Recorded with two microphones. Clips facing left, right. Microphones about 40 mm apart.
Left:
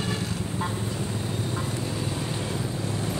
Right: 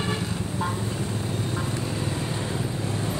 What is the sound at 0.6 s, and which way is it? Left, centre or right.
Vehicle, right.